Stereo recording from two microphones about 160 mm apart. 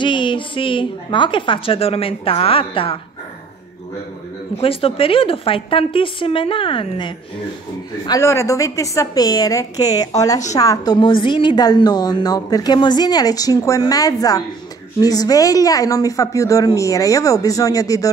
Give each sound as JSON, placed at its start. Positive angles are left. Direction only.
{"t": 0.0, "sound": "a woman's voice", "side_deg": 30}
{"t": 4.6, "sound": "a woman's voice", "side_deg": 35}
{"t": 8.1, "sound": "a woman's voice", "side_deg": 15}